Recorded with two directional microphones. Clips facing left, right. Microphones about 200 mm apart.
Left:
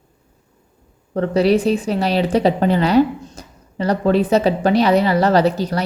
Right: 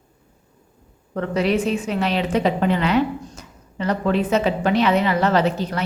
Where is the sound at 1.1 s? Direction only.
35° left (ahead or behind).